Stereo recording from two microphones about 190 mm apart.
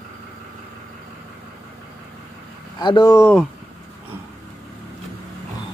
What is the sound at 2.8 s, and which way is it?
Speech, 25° left (ahead or behind).